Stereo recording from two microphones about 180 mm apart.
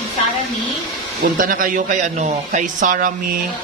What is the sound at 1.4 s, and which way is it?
A man's voice, 50° right (ahead or behind).